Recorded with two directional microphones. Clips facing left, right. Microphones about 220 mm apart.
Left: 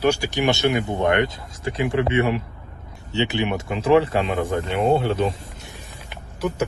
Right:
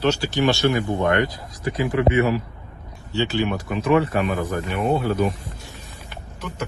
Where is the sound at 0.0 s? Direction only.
15° left (ahead or behind).